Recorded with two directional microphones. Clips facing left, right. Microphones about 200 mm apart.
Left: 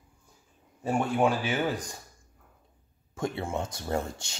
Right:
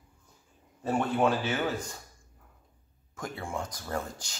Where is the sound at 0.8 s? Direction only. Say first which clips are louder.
Left 1 dB; 10° left (ahead or behind).